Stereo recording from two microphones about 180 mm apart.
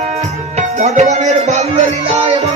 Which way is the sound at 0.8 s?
40° right (ahead or behind).